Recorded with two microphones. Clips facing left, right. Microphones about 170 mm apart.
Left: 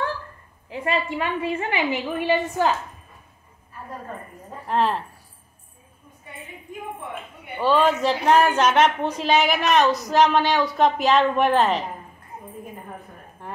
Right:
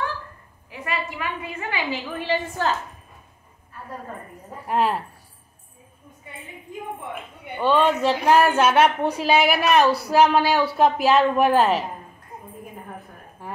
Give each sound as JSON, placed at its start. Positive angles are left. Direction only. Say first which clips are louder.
{"t": 0.7, "sound": "a woman's voice", "louder": "left 5 dB", "side_deg": 30}
{"t": 4.6, "sound": "a woman's voice", "louder": "even", "side_deg": -10}
{"t": 7.5, "sound": "a woman's voice", "louder": "even", "side_deg": 0}
{"t": 13.4, "sound": "a sound", "louder": "right 1 dB", "side_deg": -5}